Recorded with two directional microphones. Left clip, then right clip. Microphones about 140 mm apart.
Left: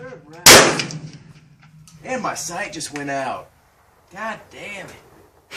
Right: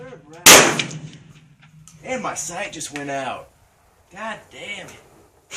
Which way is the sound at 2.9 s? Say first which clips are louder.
Left 3 dB; 20° right (ahead or behind).